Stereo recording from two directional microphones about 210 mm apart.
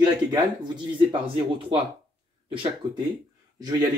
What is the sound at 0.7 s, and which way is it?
Speech, 25° right (ahead or behind).